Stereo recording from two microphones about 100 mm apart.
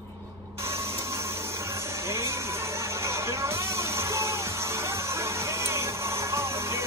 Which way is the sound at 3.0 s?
30° right (ahead or behind).